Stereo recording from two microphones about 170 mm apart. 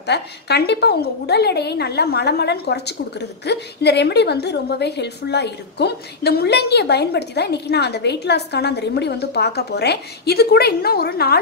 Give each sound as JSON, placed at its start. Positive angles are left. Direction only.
{"t": 0.0, "sound": "a woman's voice", "side_deg": 75}